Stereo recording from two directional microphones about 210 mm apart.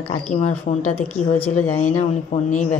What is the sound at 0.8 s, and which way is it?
Speech, 10° left (ahead or behind).